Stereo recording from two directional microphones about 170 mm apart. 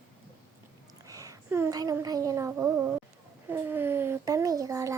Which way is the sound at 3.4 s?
15° right (ahead or behind).